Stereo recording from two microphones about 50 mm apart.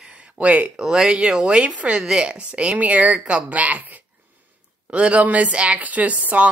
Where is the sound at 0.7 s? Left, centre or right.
Centre.